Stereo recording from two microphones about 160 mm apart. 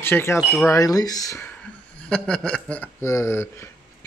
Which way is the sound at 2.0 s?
5° left (ahead or behind).